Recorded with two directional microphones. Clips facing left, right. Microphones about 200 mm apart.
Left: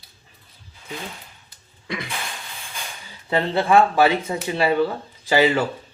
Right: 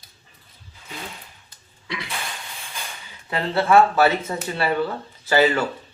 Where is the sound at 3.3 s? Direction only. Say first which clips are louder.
Left 1 dB; 20° left (ahead or behind).